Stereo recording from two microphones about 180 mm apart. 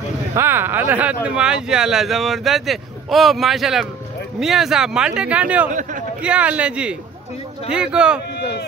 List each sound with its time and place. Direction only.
0.3 s speech: 15° right (ahead or behind)
5.7 s a man's voice: 45° right (ahead or behind)
6.2 s speech: 5° right (ahead or behind)
8.4 s speech: 65° left (ahead or behind)